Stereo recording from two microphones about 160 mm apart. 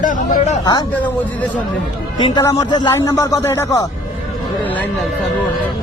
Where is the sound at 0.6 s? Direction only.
25° left (ahead or behind).